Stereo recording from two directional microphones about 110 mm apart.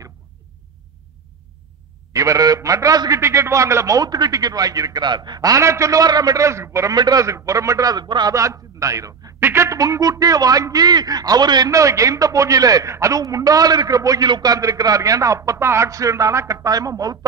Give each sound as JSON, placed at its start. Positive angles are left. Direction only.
{"t": 2.1, "sound": "a man's voice", "side_deg": -30}